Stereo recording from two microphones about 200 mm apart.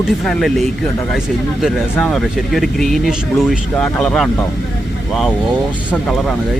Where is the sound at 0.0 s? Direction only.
Centre (ahead or behind).